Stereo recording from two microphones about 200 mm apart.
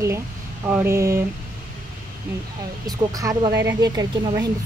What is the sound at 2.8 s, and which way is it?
Speech, 20° right (ahead or behind).